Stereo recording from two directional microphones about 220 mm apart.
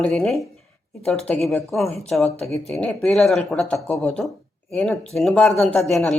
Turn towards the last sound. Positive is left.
turn(degrees=0)  # may be behind; listen again after turning